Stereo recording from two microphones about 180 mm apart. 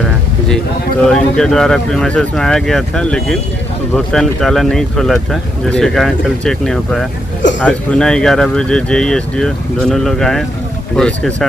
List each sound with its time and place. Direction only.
1.0 s speech: 5° left (ahead or behind)